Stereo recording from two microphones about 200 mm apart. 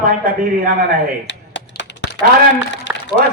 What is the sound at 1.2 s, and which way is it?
Typing, 60° left (ahead or behind).